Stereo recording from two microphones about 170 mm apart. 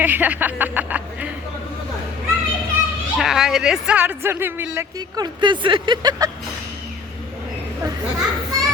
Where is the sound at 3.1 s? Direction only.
Centre (ahead or behind).